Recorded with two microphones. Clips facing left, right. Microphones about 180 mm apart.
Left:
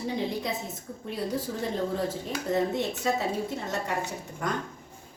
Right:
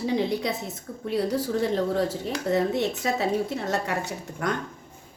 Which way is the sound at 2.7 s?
70° right (ahead or behind).